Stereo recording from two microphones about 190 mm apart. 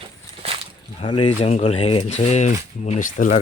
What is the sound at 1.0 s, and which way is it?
Speech, 25° left (ahead or behind).